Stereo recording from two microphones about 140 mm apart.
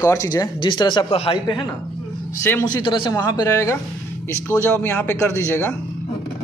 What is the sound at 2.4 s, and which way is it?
Speech, 15° left (ahead or behind).